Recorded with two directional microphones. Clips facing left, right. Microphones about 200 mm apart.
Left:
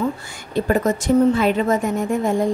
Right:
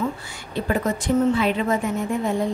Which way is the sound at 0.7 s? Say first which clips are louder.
Left 4 dB; 45° left (ahead or behind).